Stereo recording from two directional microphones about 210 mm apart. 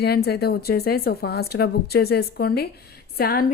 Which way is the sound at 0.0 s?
50° left (ahead or behind).